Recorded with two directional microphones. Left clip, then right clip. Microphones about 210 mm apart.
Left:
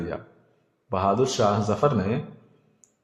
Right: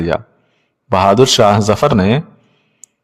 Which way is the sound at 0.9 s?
45° right (ahead or behind).